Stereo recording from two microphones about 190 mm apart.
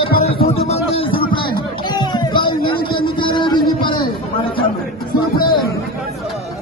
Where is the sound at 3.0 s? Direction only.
25° left (ahead or behind).